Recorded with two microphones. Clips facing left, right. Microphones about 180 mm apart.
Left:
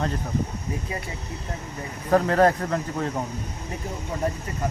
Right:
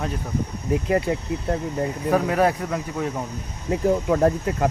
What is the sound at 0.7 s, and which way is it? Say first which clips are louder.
Speech: right 10 dB; 70° right (ahead or behind).